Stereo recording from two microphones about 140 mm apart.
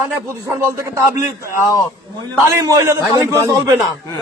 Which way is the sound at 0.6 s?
15° right (ahead or behind).